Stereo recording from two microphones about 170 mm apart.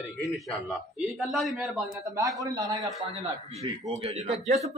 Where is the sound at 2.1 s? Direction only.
20° right (ahead or behind).